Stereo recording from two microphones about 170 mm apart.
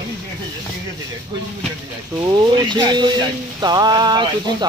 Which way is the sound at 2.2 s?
25° right (ahead or behind).